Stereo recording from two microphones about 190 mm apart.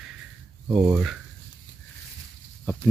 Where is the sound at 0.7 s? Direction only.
5° right (ahead or behind).